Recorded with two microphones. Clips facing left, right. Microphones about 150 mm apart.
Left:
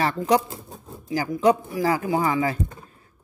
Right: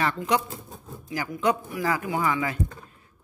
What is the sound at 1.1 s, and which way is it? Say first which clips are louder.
Speech: left 6 dB; 30° left (ahead or behind).